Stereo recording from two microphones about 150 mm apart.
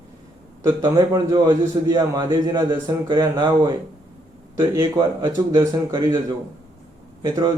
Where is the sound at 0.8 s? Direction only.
25° right (ahead or behind).